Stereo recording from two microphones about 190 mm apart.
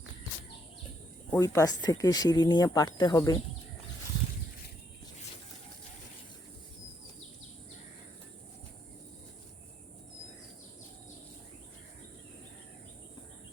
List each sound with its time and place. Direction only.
1.3 s speech: 15° left (ahead or behind)